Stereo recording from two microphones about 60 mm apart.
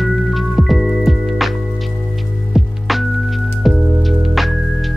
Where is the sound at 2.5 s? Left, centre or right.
Centre.